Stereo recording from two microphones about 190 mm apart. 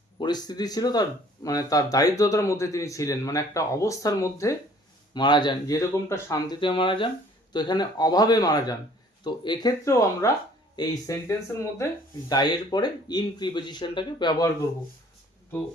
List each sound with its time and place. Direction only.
0.2 s speech: 20° left (ahead or behind)